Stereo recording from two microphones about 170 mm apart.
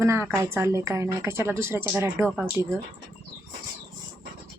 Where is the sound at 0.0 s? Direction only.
15° right (ahead or behind).